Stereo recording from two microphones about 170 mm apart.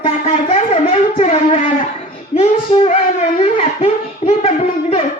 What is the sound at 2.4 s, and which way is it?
Child singing, 35° left (ahead or behind).